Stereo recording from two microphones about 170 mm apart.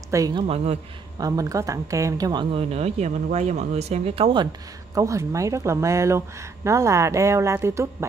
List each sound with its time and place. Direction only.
0.1 s speech: 25° right (ahead or behind)
2.5 s speech: 40° right (ahead or behind); by 8.1 s 15° right (ahead or behind)